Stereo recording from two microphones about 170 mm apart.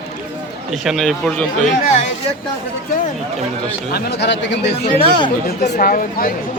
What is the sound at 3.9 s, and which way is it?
Speech, 80° left.